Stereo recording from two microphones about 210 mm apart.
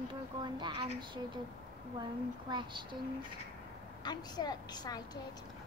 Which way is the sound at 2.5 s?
20° right (ahead or behind).